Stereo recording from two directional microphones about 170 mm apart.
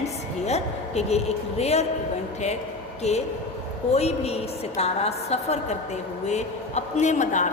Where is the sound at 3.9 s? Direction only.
40° left (ahead or behind).